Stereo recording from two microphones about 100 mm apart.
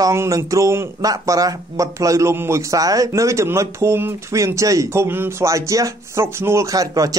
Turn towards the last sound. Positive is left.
turn(degrees=-35)  # may be behind; listen again after turning